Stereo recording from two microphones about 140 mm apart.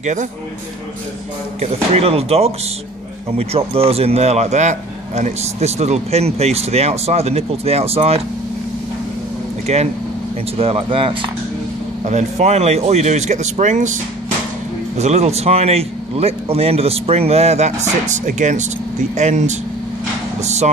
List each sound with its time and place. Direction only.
0.0 s speech: 60° right (ahead or behind)
1.6 s speech: 45° right (ahead or behind)
9.7 s speech: 50° right (ahead or behind)
12.0 s speech: 55° right (ahead or behind)
15.0 s speech: 50° right (ahead or behind)